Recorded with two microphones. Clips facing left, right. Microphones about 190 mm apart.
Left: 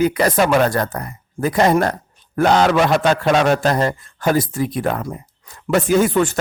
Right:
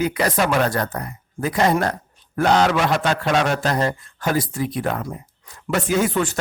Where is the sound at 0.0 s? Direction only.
50° left (ahead or behind).